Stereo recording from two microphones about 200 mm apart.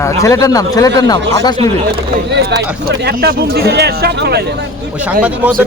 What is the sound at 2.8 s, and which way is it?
Speech, 50° right (ahead or behind).